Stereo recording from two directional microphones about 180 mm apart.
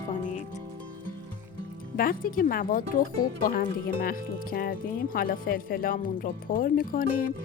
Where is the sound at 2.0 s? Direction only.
55° left (ahead or behind).